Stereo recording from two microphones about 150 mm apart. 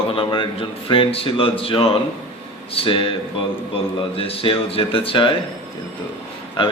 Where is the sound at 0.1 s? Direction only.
35° left (ahead or behind).